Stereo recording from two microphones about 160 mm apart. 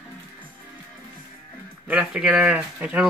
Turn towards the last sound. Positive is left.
turn(degrees=-10)  # may be behind; listen again after turning